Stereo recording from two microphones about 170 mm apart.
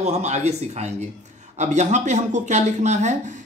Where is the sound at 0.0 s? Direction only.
40° right (ahead or behind).